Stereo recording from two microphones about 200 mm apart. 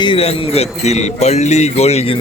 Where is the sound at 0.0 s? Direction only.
25° left (ahead or behind).